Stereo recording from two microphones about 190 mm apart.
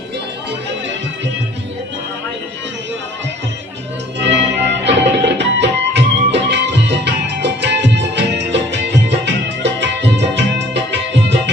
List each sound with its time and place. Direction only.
4.2 s music: 65° right (ahead or behind)